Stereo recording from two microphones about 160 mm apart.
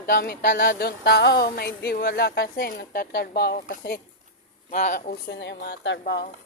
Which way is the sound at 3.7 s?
65° left (ahead or behind).